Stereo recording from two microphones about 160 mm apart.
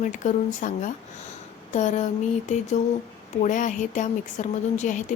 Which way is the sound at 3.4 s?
50° left (ahead or behind).